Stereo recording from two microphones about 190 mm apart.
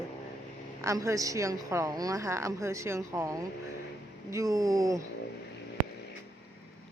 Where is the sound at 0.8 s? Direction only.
15° right (ahead or behind).